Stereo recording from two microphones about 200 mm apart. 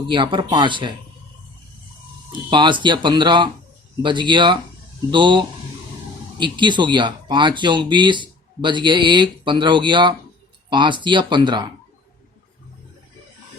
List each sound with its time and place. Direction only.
0.1 s speech: 25° right (ahead or behind)
2.5 s speech: 25° right (ahead or behind)